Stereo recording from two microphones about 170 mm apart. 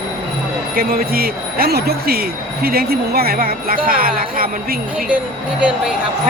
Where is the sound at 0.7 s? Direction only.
60° right (ahead or behind).